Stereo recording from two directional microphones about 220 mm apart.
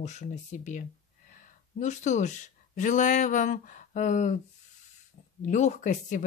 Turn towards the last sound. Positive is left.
turn(degrees=35)  # may be behind; listen again after turning